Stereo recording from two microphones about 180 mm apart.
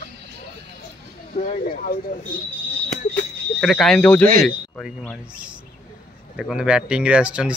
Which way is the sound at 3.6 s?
Centre (ahead or behind).